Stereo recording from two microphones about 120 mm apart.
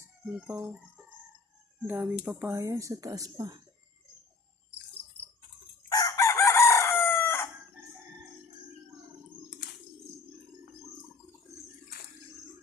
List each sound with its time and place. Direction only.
0.4 s music: 10° right (ahead or behind)
1.9 s speech: 15° right (ahead or behind); by 3.6 s 30° right (ahead or behind)
5.9 s chicken: 30° left (ahead or behind)